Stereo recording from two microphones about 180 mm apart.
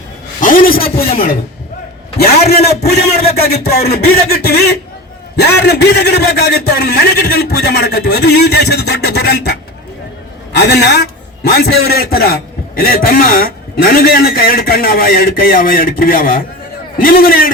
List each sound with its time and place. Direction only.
0.4 s a man's voice: 50° left (ahead or behind)